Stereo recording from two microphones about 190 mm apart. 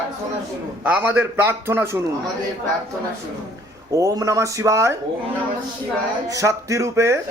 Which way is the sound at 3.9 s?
15° right (ahead or behind).